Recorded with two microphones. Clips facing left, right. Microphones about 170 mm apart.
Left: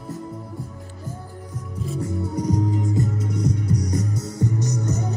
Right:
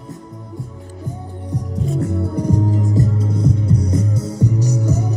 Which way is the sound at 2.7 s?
40° right (ahead or behind).